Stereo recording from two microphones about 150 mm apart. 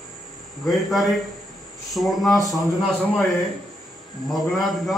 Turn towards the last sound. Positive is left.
turn(degrees=0)  # may be behind; listen again after turning